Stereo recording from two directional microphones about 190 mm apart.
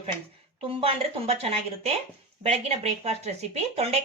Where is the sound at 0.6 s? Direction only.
30° right (ahead or behind).